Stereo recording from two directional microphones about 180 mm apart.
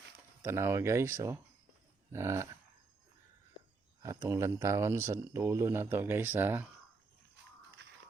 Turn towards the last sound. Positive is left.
turn(degrees=-10)  # may be behind; listen again after turning